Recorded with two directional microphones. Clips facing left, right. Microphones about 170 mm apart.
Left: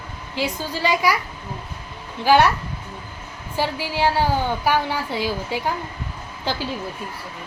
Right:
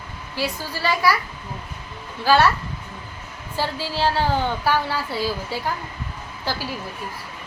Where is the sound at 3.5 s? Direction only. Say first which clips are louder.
Left 2 dB; 15° left (ahead or behind).